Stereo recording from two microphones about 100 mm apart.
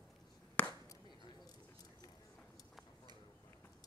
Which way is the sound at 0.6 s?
15° left (ahead or behind).